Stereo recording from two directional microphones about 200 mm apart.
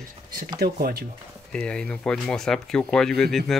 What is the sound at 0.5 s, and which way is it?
Speech, 45° right (ahead or behind).